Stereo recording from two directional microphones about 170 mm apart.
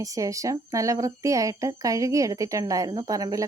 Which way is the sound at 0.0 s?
20° right (ahead or behind).